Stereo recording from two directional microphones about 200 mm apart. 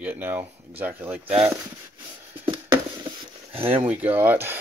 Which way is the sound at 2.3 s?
25° right (ahead or behind).